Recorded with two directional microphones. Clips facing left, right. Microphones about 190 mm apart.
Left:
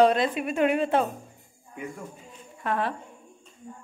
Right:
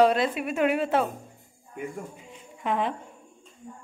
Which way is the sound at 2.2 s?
20° right (ahead or behind).